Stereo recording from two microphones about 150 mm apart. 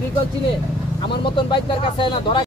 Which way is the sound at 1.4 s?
35° left (ahead or behind).